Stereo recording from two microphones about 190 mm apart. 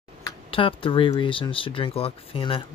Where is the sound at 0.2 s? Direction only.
25° left (ahead or behind).